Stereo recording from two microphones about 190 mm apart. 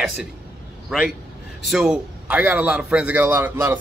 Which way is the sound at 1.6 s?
Centre (ahead or behind).